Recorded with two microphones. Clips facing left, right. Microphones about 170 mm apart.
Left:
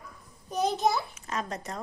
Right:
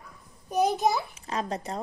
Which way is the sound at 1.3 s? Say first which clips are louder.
Right 3 dB; 30° right (ahead or behind).